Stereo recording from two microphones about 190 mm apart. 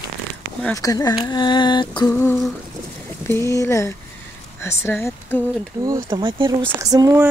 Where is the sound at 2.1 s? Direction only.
10° left (ahead or behind).